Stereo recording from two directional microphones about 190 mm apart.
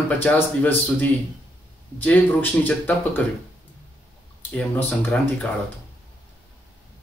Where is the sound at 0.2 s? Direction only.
10° left (ahead or behind).